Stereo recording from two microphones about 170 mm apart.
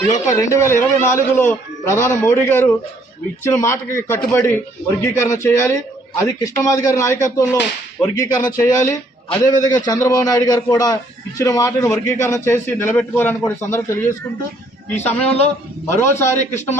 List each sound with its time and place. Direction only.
0.1 s a man's voice: 20° left (ahead or behind)
15.0 s a man's voice: 10° left (ahead or behind)
16.5 s speech: 45° left (ahead or behind)